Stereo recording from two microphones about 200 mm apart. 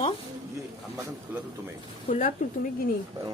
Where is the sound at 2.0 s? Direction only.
40° left (ahead or behind).